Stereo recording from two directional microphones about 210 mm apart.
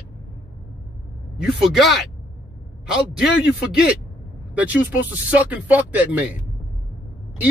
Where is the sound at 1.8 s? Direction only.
50° left (ahead or behind).